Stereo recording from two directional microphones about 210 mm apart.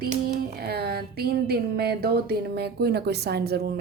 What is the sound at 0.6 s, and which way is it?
Speech, 50° right (ahead or behind).